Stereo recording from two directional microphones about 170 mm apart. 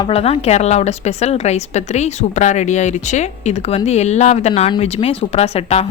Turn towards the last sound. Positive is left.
turn(degrees=35)  # may be behind; listen again after turning